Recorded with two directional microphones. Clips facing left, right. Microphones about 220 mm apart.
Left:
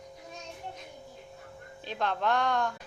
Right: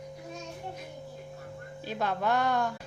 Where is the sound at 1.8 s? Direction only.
10° right (ahead or behind).